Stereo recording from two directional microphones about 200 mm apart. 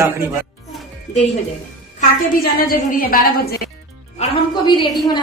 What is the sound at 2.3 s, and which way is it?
Speech, 45° left (ahead or behind).